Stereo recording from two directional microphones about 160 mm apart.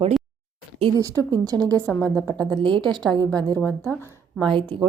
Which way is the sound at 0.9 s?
20° right (ahead or behind).